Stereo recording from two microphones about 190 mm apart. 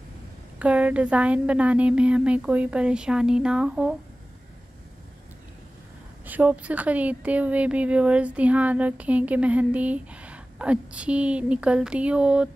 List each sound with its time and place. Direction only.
0.6 s speech: 5° right (ahead or behind)
6.2 s speech: 10° right (ahead or behind)